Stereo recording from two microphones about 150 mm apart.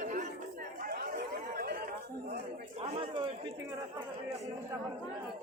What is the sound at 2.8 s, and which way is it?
Chatter, 40° right (ahead or behind).